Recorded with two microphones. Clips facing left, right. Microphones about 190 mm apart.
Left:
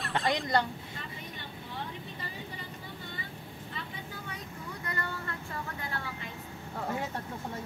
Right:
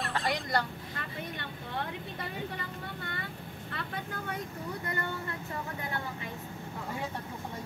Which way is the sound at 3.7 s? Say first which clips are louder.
Right 5 dB; 65° right (ahead or behind).